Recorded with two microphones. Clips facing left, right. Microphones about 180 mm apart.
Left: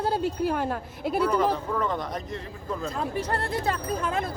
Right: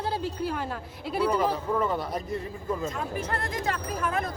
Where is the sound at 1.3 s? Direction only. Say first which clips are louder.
Left 1 dB; 10° right (ahead or behind).